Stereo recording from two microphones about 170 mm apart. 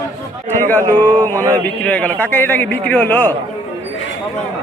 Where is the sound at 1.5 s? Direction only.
10° left (ahead or behind).